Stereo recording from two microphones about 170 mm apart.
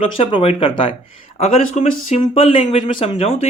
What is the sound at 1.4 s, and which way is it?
Speech, 40° left (ahead or behind).